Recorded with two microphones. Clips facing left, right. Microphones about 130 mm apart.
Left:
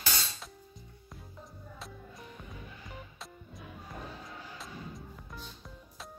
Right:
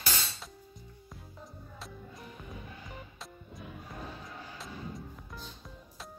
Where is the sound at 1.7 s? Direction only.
Centre (ahead or behind).